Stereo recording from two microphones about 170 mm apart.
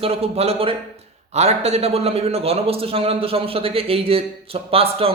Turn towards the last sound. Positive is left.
turn(degrees=-35)  # may be behind; listen again after turning